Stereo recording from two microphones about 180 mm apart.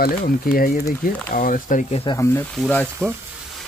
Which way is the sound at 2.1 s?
15° left (ahead or behind).